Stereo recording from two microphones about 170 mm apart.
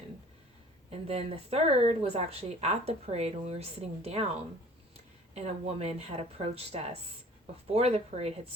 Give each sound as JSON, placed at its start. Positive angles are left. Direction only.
{"t": 0.9, "sound": "speech", "side_deg": -35}
{"t": 5.3, "sound": "speech", "side_deg": -40}